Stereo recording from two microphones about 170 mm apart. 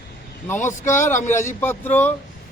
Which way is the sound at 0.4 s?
15° left (ahead or behind).